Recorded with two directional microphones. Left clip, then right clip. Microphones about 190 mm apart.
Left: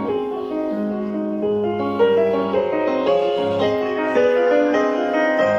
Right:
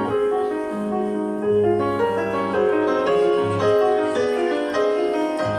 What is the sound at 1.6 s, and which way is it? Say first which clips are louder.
Music: left 2 dB; 15° left (ahead or behind).